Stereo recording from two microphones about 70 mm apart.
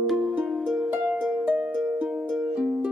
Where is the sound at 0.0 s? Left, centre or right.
Centre.